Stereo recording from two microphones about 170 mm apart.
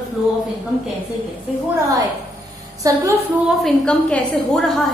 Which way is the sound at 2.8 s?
20° right (ahead or behind).